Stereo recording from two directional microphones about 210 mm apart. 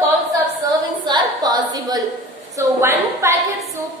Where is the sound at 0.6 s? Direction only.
20° right (ahead or behind).